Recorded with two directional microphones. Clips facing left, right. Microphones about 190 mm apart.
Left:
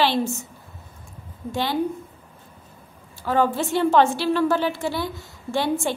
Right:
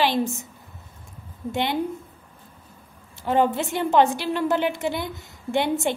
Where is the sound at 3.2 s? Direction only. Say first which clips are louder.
Even; 20° right (ahead or behind).